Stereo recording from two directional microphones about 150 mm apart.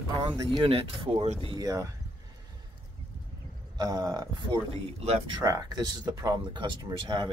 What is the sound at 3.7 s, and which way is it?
Speech, 30° right (ahead or behind).